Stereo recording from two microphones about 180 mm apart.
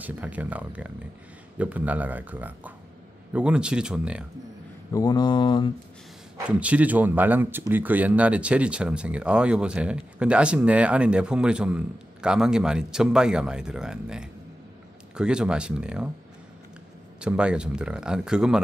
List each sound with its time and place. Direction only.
0.0 s speech: 10° right (ahead or behind)
4.9 s mantra: 20° left (ahead or behind)
6.4 s speech: 5° right (ahead or behind)
17.2 s speech: 5° right (ahead or behind)